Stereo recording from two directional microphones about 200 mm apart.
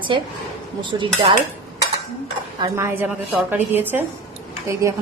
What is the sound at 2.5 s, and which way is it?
A woman's voice, 15° right (ahead or behind).